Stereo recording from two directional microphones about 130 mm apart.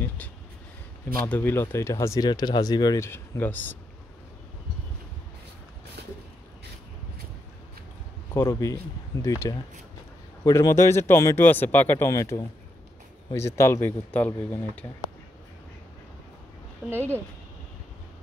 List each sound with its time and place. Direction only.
1.2 s speech: 15° left (ahead or behind)
8.4 s speech: 25° left (ahead or behind)